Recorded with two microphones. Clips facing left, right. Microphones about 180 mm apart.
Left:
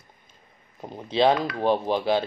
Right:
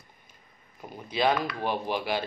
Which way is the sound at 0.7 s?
30° left (ahead or behind).